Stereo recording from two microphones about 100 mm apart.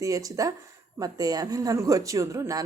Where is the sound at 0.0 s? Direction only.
35° right (ahead or behind).